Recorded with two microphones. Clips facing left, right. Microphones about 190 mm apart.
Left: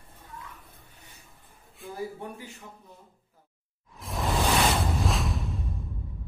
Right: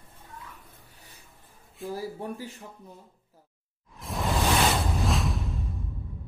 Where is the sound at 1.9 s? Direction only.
35° right (ahead or behind).